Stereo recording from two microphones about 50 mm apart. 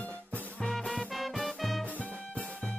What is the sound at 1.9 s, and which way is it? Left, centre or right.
Music, left.